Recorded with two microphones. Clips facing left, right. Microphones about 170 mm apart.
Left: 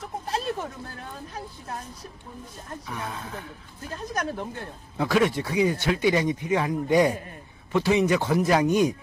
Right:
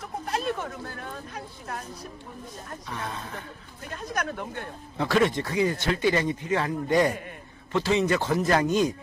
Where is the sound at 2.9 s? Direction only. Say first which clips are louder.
Even; 5° left (ahead or behind).